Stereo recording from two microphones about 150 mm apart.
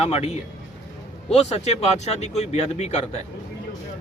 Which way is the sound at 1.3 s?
50° left (ahead or behind).